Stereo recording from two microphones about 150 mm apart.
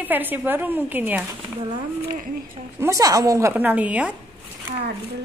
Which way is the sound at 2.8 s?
20° right (ahead or behind).